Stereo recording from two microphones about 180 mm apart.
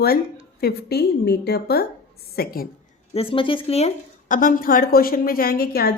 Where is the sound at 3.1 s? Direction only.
30° left (ahead or behind).